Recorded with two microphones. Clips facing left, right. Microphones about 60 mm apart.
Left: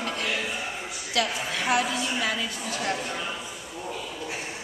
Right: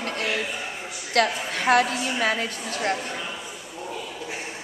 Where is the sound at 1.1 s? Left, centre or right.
Right.